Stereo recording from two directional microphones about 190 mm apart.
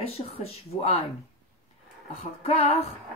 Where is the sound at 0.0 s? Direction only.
30° left (ahead or behind).